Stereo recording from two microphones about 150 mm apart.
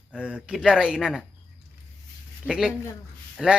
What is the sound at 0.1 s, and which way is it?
Speech, 10° right (ahead or behind).